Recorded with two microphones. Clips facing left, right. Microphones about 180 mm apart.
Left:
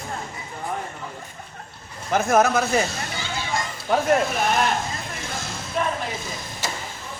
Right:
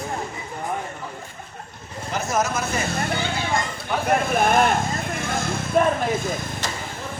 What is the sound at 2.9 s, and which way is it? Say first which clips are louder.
Children playing: right 7 dB; 55° right (ahead or behind).